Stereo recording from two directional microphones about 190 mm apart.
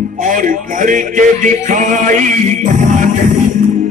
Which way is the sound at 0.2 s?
45° right (ahead or behind).